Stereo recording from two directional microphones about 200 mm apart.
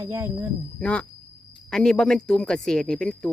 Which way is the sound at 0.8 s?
5° left (ahead or behind).